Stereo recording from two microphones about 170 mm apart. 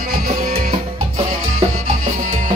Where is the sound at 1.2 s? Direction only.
40° right (ahead or behind).